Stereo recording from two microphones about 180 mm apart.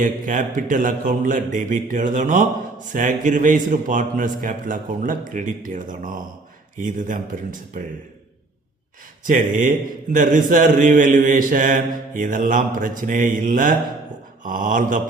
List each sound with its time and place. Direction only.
0.0 s a man's voice: 45° right (ahead or behind)
9.2 s a man's voice: 45° right (ahead or behind)